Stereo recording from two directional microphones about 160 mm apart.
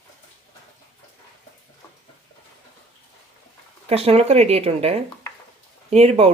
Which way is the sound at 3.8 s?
40° right (ahead or behind).